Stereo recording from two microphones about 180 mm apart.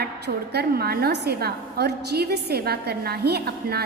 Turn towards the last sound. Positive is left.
turn(degrees=-60)  # may be behind; listen again after turning